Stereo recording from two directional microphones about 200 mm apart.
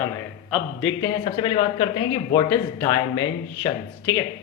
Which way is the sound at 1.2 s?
25° left (ahead or behind).